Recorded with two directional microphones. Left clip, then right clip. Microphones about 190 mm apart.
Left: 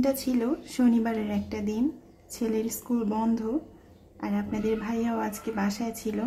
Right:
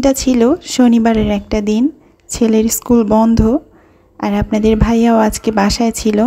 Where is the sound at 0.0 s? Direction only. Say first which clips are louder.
Right 15 dB; 40° right (ahead or behind).